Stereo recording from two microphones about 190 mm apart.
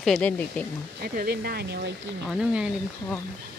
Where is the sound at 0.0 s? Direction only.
5° left (ahead or behind).